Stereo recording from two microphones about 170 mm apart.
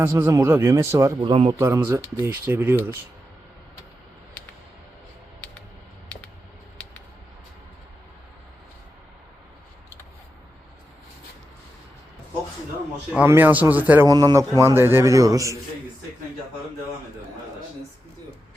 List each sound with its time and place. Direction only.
0.0 s speech: 15° right (ahead or behind)
1.2 s a man's voice: 30° right (ahead or behind)
1.5 s speech: 15° right (ahead or behind)
13.1 s speech: 10° right (ahead or behind)
14.1 s a man's voice: 20° right (ahead or behind)